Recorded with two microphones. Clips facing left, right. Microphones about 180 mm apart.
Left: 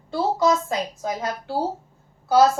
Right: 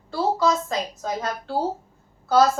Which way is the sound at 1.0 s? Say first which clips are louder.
Left 1 dB; 10° left (ahead or behind).